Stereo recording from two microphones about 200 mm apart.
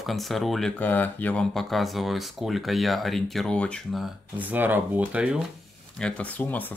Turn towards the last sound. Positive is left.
turn(degrees=10)  # may be behind; listen again after turning